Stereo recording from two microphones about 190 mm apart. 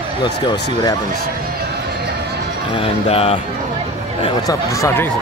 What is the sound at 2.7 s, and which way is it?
Music, 30° left (ahead or behind).